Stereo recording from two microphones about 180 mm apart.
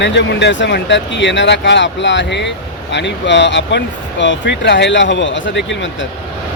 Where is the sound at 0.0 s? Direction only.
75° left (ahead or behind).